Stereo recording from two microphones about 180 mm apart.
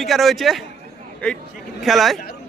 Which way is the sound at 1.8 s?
Centre (ahead or behind).